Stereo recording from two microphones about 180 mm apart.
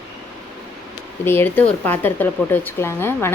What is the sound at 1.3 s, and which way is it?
Speech, 10° left (ahead or behind).